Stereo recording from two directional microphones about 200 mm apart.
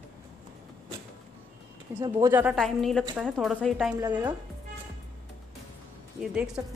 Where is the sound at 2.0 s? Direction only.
15° right (ahead or behind).